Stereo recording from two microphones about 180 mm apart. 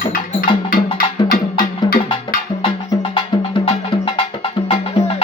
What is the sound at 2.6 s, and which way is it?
Music, 30° left (ahead or behind).